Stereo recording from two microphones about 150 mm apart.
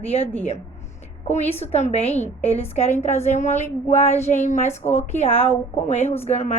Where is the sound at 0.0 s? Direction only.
40° left (ahead or behind).